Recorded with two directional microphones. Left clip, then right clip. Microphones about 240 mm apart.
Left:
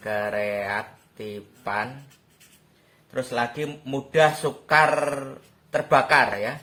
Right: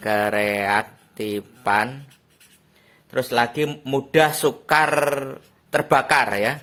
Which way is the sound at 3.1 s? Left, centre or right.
Right.